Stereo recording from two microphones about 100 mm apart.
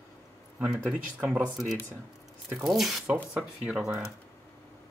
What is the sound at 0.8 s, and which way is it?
Speech, 15° right (ahead or behind).